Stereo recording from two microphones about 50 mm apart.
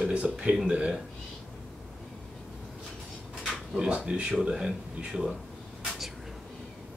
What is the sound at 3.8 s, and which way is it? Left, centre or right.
Speech, right.